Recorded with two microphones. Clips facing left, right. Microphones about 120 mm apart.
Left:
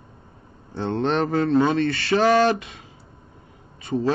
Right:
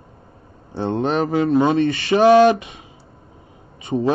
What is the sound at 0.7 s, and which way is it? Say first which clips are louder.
Speech: right 2 dB; 15° right (ahead or behind).